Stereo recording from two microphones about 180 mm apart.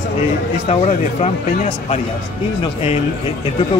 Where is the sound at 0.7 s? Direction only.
35° left (ahead or behind).